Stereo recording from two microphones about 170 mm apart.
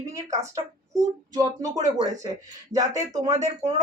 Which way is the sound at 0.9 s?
20° right (ahead or behind).